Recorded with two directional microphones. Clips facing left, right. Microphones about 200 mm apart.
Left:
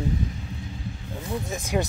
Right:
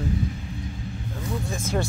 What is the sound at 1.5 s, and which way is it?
Speech, 15° left (ahead or behind).